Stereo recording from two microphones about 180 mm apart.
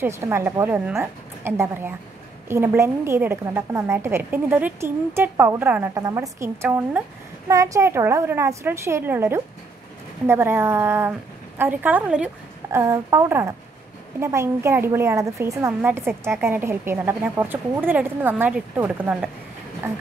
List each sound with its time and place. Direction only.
0.0 s a woman's voice: 15° right (ahead or behind)